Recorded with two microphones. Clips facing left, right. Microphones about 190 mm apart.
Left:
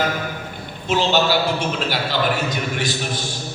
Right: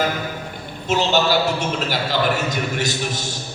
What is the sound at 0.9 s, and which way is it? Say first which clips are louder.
A man's voice: even; 45° right (ahead or behind).